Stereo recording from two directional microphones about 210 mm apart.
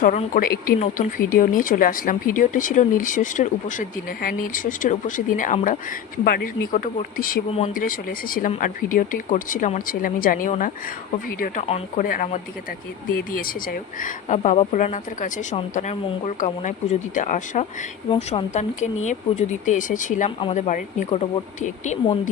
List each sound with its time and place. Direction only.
0.0 s speech: 35° left (ahead or behind)